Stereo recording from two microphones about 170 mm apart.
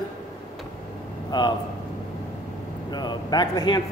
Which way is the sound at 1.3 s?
25° left (ahead or behind).